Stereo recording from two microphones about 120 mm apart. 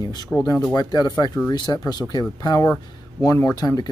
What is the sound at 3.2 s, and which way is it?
Speech, 25° left (ahead or behind).